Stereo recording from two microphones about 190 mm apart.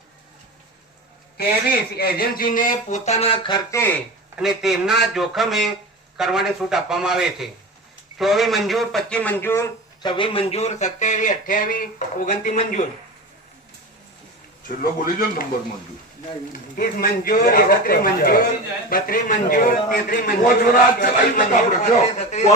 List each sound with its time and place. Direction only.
1.4 s a man's voice: 55° left (ahead or behind); by 3.8 s 20° left (ahead or behind)
4.4 s speech: centre (ahead or behind)
10.0 s speech: 25° left (ahead or behind); by 12.8 s 40° left (ahead or behind)
14.8 s a man's voice: 50° left (ahead or behind)
16.5 s a man's voice: 50° left (ahead or behind)